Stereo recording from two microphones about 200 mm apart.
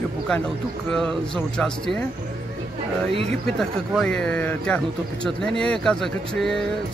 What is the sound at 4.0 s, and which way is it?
Speech, 5° left (ahead or behind).